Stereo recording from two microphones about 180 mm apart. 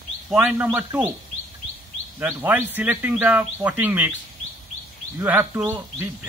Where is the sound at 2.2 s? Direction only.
10° right (ahead or behind).